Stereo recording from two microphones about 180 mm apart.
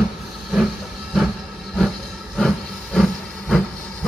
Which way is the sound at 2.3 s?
Centre (ahead or behind).